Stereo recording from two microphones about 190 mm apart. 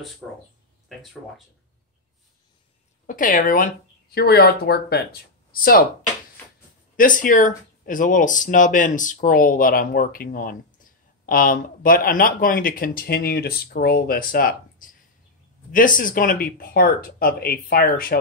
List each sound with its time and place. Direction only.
3.1 s speech: 45° left (ahead or behind)
7.0 s speech: 45° left (ahead or behind)